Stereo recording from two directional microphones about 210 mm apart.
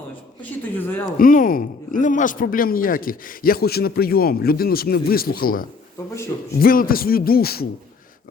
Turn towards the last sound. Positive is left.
turn(degrees=45)  # may be behind; listen again after turning